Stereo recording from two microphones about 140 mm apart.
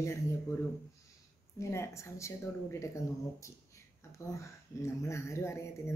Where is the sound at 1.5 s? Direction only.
20° left (ahead or behind).